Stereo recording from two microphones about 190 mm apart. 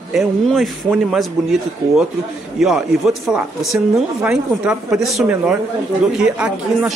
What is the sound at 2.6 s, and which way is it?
Speech, centre (ahead or behind).